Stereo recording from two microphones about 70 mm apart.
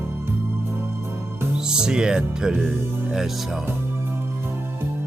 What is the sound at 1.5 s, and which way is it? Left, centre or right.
Speech, centre.